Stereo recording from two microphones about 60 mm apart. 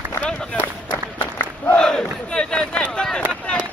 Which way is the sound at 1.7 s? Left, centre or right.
Centre.